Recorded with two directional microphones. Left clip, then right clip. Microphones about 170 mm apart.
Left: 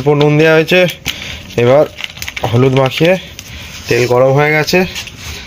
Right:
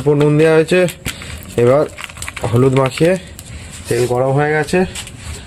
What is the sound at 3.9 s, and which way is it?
Speech, 30° left (ahead or behind).